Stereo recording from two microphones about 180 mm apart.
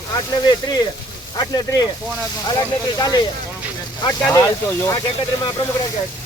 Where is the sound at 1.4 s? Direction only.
20° left (ahead or behind).